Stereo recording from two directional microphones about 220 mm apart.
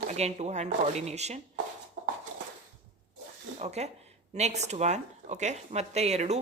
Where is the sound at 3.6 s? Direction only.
30° right (ahead or behind).